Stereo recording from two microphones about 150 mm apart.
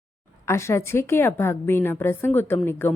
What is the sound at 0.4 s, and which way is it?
Speech, 20° left (ahead or behind).